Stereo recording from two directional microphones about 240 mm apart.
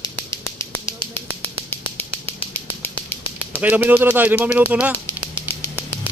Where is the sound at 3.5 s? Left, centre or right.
Centre.